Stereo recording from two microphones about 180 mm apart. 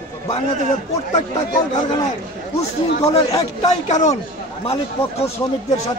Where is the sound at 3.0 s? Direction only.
35° left (ahead or behind).